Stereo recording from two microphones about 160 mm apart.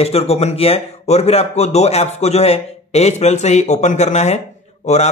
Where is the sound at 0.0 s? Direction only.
40° left (ahead or behind).